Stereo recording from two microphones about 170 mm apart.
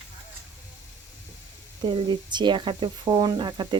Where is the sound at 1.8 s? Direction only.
30° right (ahead or behind).